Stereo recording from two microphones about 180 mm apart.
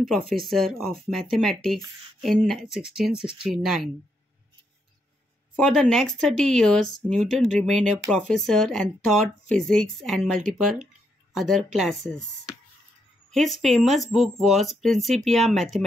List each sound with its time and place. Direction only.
0.4 s speech: centre (ahead or behind)
5.6 s speech: centre (ahead or behind)
13.3 s speech: centre (ahead or behind)